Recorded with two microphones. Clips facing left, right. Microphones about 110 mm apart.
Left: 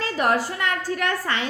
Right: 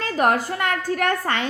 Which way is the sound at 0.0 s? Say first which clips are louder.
Right 2 dB; 50° right (ahead or behind).